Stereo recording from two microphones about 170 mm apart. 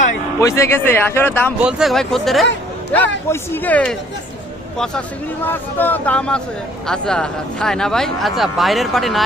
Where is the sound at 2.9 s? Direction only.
10° left (ahead or behind).